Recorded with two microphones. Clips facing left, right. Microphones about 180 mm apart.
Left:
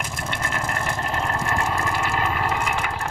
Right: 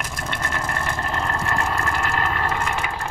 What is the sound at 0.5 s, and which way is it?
Vehicle, 10° left (ahead or behind).